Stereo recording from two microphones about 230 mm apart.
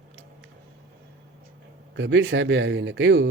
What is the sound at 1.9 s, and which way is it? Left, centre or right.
A man's voice, right.